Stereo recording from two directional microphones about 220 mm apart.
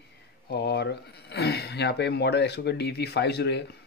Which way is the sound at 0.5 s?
50° left (ahead or behind).